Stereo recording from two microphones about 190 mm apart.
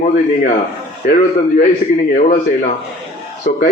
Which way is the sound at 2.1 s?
45° left (ahead or behind).